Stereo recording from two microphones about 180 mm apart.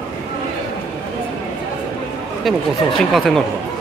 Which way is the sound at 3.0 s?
Centre (ahead or behind).